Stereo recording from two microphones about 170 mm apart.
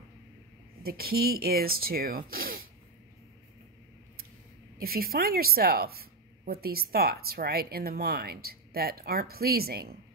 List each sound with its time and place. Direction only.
0.8 s speech: 60° right (ahead or behind)
4.7 s speech: 60° right (ahead or behind)